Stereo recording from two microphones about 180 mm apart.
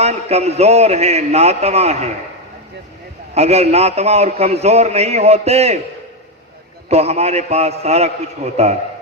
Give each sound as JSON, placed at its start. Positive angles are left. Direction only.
{"t": 0.0, "sound": "a man's voice", "side_deg": -35}
{"t": 3.3, "sound": "a man's voice", "side_deg": -35}
{"t": 6.9, "sound": "a man's voice", "side_deg": -35}